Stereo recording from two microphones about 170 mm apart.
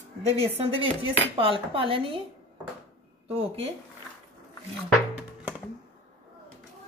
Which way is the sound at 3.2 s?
35° right (ahead or behind).